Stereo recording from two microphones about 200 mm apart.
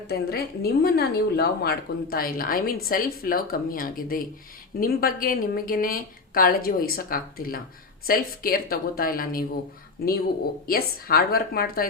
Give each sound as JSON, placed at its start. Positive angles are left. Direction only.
{"t": 0.1, "sound": "a woman's voice", "side_deg": 50}